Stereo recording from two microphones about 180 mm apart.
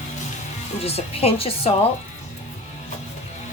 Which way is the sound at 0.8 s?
35° left (ahead or behind).